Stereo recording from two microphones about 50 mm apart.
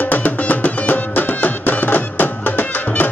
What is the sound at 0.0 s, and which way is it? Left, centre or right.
Music, left.